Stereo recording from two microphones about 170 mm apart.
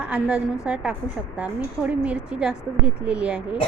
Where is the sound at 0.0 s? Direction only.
5° right (ahead or behind).